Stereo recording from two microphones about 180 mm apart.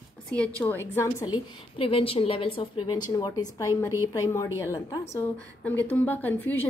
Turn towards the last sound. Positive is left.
turn(degrees=10)  # may be behind; listen again after turning